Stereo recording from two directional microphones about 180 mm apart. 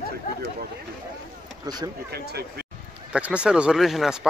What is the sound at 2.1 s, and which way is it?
Speech, 60° right (ahead or behind).